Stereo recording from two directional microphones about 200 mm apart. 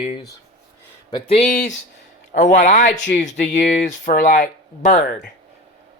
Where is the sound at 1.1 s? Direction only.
30° left (ahead or behind); by 4.4 s 45° left (ahead or behind).